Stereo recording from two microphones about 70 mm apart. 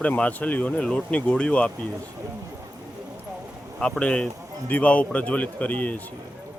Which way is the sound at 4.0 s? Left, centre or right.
Centre.